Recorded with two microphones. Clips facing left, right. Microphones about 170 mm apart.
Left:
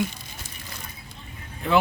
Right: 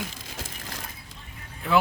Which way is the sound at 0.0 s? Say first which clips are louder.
Left 7 dB; 90° right.